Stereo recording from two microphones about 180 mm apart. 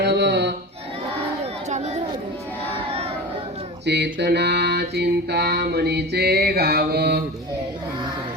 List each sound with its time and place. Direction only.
0.0 s a sound: 70° right (ahead or behind)
1.7 s chatter: 35° right (ahead or behind)
3.8 s mantra: 70° right (ahead or behind)